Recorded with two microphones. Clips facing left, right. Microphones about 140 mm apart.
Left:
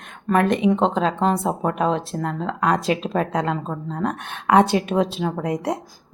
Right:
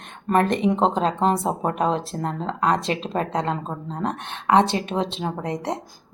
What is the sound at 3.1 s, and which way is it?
A woman's voice, 30° right (ahead or behind).